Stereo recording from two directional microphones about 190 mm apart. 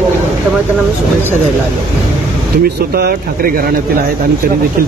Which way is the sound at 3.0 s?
50° right (ahead or behind).